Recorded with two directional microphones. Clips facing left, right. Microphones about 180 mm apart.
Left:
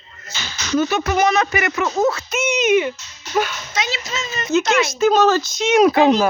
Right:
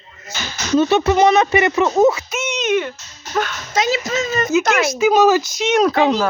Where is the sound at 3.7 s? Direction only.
45° right (ahead or behind).